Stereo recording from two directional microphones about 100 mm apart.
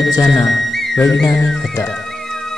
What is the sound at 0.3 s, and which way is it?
Speech, 5° left (ahead or behind).